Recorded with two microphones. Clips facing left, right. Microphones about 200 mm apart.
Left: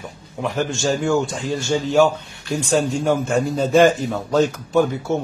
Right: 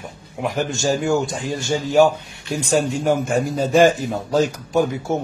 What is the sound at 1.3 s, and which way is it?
Speech, 10° right (ahead or behind).